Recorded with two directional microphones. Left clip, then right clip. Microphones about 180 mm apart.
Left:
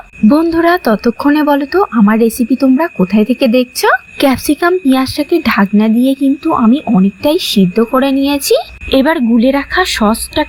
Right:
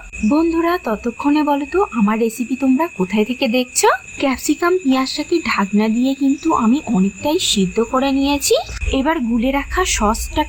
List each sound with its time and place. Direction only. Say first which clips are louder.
0.3 s speech: left 7 dB; 25° left (ahead or behind)